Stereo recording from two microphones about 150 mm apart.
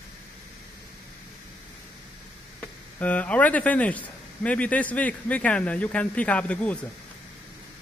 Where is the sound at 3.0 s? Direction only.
10° left (ahead or behind).